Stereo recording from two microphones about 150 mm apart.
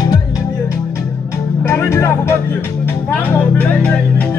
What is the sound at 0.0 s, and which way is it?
Music, 25° left (ahead or behind).